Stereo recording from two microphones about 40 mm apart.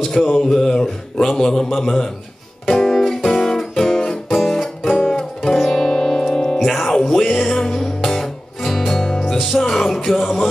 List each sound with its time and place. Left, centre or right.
0.0 s a sound: centre
2.7 s music: centre
5.0 s music: centre
6.3 s music: centre
6.6 s music: centre